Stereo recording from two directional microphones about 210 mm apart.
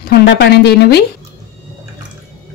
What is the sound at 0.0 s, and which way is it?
A woman's voice, 50° left (ahead or behind).